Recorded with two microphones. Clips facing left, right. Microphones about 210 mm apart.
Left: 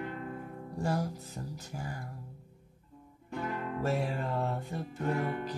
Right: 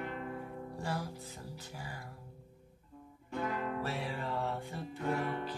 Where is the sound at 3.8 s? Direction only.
45° left (ahead or behind).